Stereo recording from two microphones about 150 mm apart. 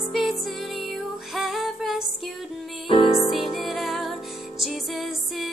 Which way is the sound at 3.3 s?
Centre (ahead or behind).